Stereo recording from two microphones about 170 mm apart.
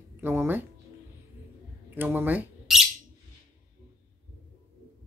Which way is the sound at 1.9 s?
10° right (ahead or behind).